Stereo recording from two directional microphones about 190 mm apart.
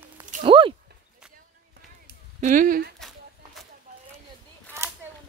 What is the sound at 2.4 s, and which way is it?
Speech, 45° right (ahead or behind).